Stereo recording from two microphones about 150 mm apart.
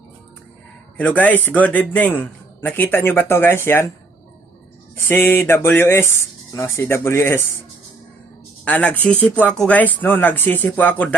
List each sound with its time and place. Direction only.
0.9 s a man's voice: 10° left (ahead or behind)
4.9 s a man's voice: 15° left (ahead or behind)
8.6 s a man's voice: 10° left (ahead or behind)